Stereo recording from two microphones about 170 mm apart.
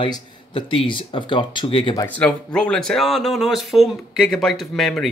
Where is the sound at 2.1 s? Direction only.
5° left (ahead or behind).